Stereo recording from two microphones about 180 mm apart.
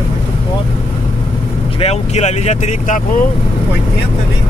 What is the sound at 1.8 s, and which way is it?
Speech, 40° left (ahead or behind).